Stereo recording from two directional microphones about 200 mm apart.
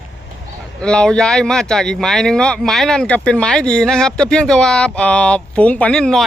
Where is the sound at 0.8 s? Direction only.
5° left (ahead or behind).